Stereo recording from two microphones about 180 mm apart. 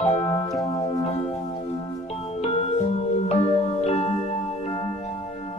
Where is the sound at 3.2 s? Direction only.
35° left (ahead or behind).